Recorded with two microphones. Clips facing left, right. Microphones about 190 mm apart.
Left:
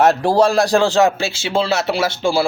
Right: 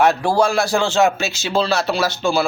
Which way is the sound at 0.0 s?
35° left (ahead or behind).